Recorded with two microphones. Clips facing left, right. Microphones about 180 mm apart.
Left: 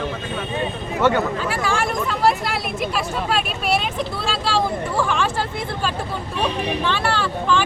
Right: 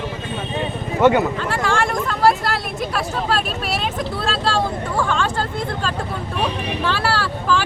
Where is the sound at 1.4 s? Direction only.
5° left (ahead or behind).